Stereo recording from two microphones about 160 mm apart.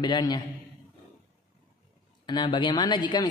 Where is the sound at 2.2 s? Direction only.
30° left (ahead or behind).